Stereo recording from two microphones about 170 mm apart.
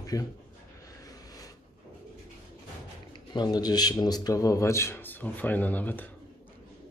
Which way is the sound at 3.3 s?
25° left (ahead or behind).